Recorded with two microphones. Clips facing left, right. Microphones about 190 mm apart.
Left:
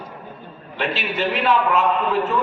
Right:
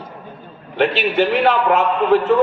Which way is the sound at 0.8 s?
60° right (ahead or behind).